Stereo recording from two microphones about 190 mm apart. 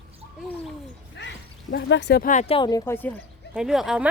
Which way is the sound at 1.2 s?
65° left (ahead or behind).